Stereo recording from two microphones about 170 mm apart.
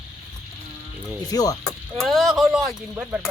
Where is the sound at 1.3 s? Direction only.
20° left (ahead or behind).